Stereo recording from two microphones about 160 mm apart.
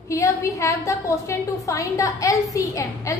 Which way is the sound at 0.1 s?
20° left (ahead or behind).